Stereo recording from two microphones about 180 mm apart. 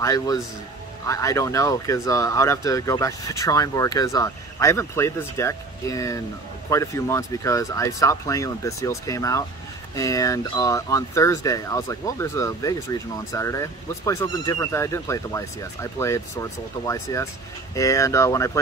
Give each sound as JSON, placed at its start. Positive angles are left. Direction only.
{"t": 0.0, "sound": "a man's voice", "side_deg": 20}